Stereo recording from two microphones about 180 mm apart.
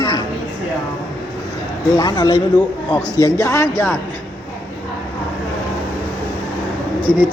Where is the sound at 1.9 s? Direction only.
20° left (ahead or behind).